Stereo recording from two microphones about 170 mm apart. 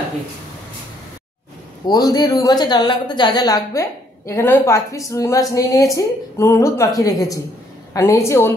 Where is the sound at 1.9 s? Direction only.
20° left (ahead or behind).